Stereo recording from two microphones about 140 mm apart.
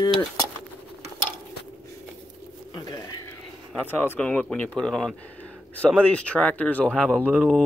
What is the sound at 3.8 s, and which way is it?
Speech, 15° left (ahead or behind).